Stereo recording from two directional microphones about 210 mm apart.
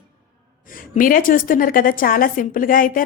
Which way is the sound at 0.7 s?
40° left (ahead or behind).